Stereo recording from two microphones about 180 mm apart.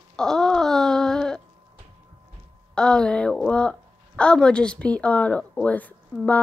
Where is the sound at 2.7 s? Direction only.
5° left (ahead or behind).